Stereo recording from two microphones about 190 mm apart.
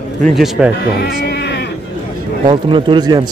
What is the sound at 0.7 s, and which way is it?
Speech, 60° left (ahead or behind).